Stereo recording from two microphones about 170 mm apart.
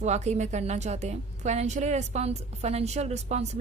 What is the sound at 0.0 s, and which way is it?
A woman's voice, 40° right (ahead or behind).